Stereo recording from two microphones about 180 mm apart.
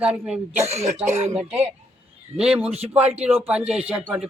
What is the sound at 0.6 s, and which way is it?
Speech, 35° right (ahead or behind).